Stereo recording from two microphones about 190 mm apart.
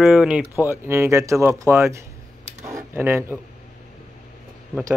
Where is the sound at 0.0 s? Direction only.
Centre (ahead or behind).